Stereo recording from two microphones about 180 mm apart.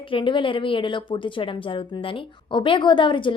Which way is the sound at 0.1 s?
30° left (ahead or behind).